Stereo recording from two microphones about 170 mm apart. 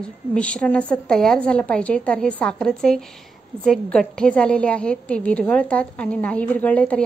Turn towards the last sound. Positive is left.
turn(degrees=10)  # may be behind; listen again after turning